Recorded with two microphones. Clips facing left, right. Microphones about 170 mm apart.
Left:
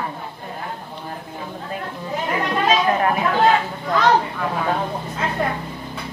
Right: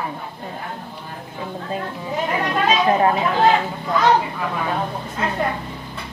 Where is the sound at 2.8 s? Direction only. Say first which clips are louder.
Right 2 dB; 25° right (ahead or behind).